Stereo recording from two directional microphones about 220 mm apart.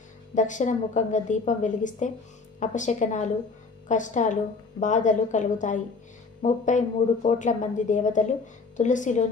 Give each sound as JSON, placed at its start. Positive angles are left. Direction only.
{"t": 0.3, "sound": "a woman's voice", "side_deg": 35}